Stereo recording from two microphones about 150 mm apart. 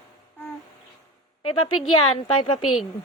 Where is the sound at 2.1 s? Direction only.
35° left (ahead or behind).